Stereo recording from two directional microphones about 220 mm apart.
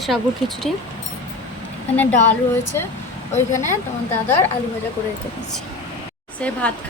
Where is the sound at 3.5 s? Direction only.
10° left (ahead or behind).